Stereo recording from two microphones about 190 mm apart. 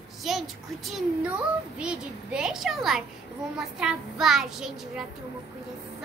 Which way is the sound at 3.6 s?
5° right (ahead or behind).